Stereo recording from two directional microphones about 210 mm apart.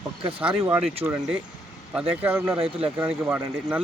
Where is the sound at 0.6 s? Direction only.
25° right (ahead or behind).